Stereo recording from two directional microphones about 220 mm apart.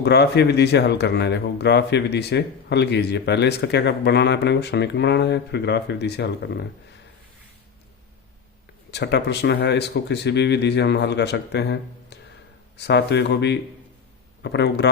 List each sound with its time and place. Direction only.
0.0 s speech: 50° left (ahead or behind)
8.9 s speech: 50° left (ahead or behind)